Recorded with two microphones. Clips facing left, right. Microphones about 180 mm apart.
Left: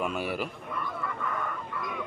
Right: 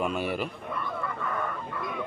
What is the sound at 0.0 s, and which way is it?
Speech, 5° left (ahead or behind).